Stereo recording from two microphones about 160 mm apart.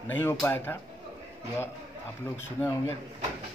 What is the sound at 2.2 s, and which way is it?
Speech, 15° left (ahead or behind).